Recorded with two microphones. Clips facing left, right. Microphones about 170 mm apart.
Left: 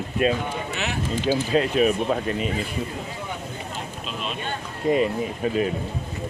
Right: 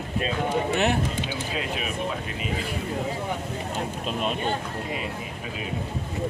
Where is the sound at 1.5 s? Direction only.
45° left (ahead or behind).